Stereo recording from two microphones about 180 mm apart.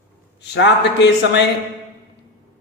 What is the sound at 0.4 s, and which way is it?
A man's voice, 75° left (ahead or behind).